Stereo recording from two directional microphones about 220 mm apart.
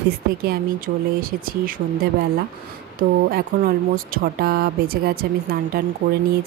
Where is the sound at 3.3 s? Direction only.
40° right (ahead or behind).